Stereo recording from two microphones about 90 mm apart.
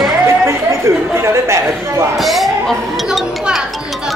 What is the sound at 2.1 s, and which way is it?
Speech, centre (ahead or behind).